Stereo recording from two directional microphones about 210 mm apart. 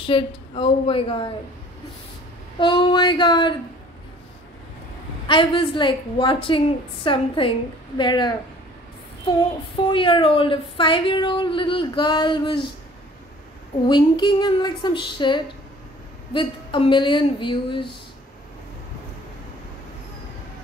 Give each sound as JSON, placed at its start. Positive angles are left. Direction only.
{"t": 0.0, "sound": "speech", "side_deg": 25}
{"t": 2.6, "sound": "speech", "side_deg": 25}
{"t": 5.2, "sound": "speech", "side_deg": 25}
{"t": 9.9, "sound": "speech", "side_deg": 25}
{"t": 13.8, "sound": "speech", "side_deg": 20}